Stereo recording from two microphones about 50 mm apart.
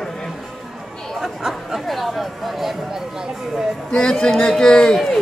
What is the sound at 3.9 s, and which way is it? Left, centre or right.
A man's voice, centre.